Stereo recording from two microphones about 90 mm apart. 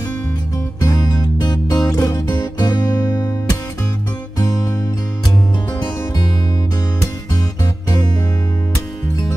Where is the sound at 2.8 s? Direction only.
40° left (ahead or behind).